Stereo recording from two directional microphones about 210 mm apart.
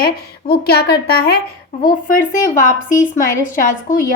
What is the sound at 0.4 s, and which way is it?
A woman's voice, 50° left (ahead or behind).